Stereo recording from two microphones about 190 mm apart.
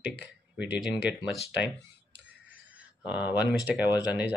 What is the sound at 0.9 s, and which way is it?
Speech, 20° left (ahead or behind).